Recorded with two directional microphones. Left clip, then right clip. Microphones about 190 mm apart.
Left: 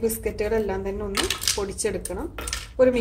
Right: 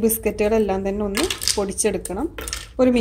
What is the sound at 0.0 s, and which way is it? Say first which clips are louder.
A woman's voice: right 5 dB; 40° right (ahead or behind).